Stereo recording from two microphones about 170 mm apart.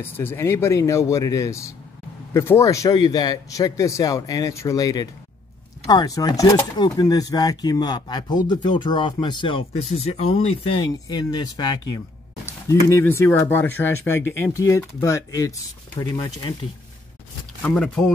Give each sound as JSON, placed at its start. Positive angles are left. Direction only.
{"t": 0.0, "sound": "a man's voice", "side_deg": 10}
{"t": 17.6, "sound": "speech", "side_deg": 5}